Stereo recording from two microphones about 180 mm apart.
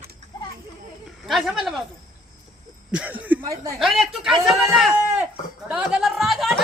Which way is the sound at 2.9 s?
10° right (ahead or behind).